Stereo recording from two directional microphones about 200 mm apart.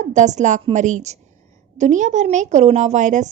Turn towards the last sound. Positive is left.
turn(degrees=-35)  # may be behind; listen again after turning